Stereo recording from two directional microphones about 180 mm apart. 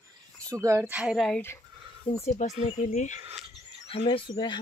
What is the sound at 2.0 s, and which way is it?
Speech, 35° left (ahead or behind).